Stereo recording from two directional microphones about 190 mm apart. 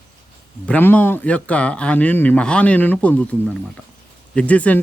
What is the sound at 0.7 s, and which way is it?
Speech, 10° left (ahead or behind).